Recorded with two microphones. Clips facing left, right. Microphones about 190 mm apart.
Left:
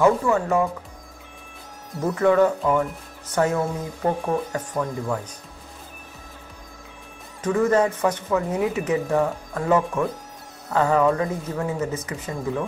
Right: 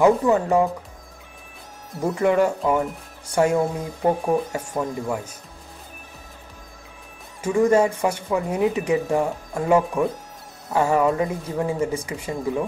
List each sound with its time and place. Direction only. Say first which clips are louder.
0.0 s speech: right 2 dB; 20° right (ahead or behind)
2.0 s speech: left 1 dB; 15° right (ahead or behind)
7.4 s speech: right 2 dB; 15° right (ahead or behind)